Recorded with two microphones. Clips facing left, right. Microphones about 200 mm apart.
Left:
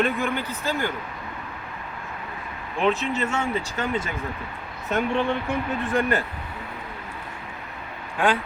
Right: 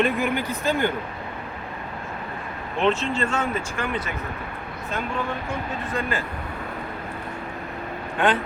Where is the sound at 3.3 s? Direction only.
25° left (ahead or behind).